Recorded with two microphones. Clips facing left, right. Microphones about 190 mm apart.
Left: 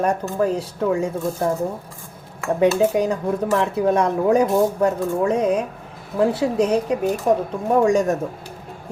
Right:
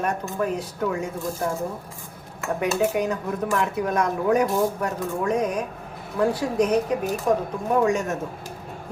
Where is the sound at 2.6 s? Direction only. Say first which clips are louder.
Left 6 dB; 30° left (ahead or behind).